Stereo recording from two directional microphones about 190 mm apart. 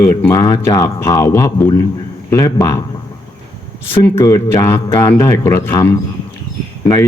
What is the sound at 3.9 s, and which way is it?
Speech, 15° left (ahead or behind).